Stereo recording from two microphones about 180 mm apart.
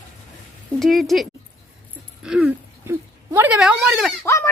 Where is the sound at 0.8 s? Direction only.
Centre (ahead or behind).